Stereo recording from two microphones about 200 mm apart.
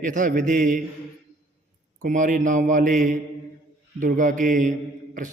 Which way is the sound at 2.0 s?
40° right (ahead or behind).